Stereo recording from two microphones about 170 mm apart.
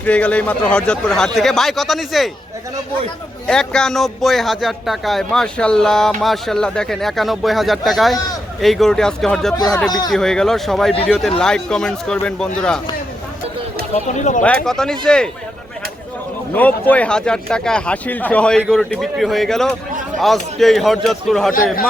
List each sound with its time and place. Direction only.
0.0 s a man's voice: 10° left (ahead or behind)
3.4 s a man's voice: 5° left (ahead or behind)
13.9 s speech: 45° left (ahead or behind)
14.4 s a man's voice: 5° left (ahead or behind)
16.6 s a man's voice: 10° left (ahead or behind)
21.5 s a man's voice: 55° left (ahead or behind)